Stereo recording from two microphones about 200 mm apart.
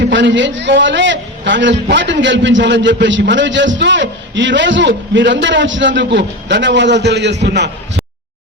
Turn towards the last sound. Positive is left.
turn(degrees=-60)  # may be behind; listen again after turning